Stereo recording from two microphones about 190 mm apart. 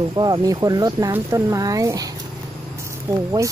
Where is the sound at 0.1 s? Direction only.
20° right (ahead or behind).